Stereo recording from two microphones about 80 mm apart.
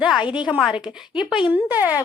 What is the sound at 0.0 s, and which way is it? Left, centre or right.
A woman's voice, centre.